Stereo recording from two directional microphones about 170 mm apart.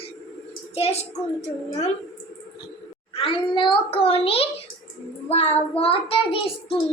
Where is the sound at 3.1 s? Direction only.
30° left (ahead or behind).